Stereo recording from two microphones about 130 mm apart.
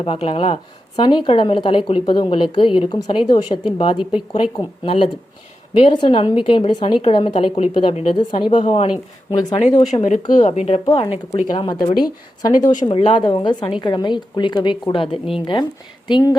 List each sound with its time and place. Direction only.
0.0 s a woman's voice: 45° left (ahead or behind)
8.4 s speech: 45° left (ahead or behind)
9.4 s speech: 70° left (ahead or behind)
11.4 s a woman's voice: 30° left (ahead or behind)
12.8 s a woman's voice: 45° left (ahead or behind)